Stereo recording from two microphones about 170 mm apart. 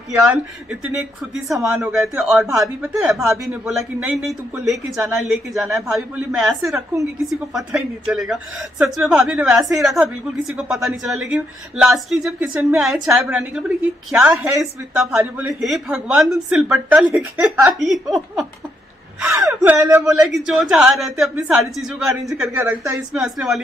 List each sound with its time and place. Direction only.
0.1 s speech: 10° right (ahead or behind)
6.6 s speech: 15° right (ahead or behind)
7.5 s speech: 5° right (ahead or behind)
19.4 s speech: 15° right (ahead or behind)
20.1 s speech: centre (ahead or behind)